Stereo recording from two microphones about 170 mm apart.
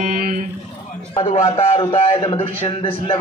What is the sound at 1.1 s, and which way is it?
A man's voice, 35° left (ahead or behind).